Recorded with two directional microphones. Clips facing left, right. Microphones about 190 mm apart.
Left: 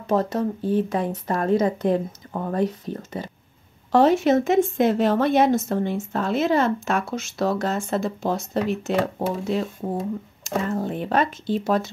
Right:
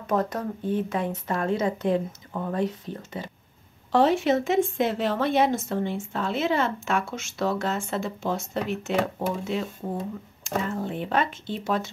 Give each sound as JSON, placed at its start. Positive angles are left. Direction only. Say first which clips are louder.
{"t": 0.0, "sound": "speech", "louder": "left 4 dB", "side_deg": 30}